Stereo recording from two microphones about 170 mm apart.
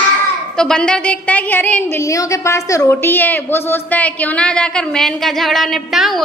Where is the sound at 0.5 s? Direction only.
5° left (ahead or behind).